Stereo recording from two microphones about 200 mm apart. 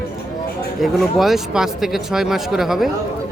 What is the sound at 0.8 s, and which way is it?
Speech, centre (ahead or behind).